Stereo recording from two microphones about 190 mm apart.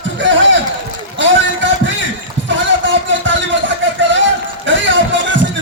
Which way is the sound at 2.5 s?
75° right (ahead or behind).